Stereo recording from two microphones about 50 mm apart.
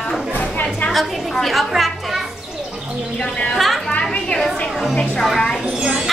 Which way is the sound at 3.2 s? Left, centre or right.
Left.